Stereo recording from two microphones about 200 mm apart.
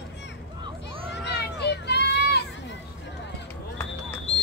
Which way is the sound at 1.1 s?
60° left (ahead or behind).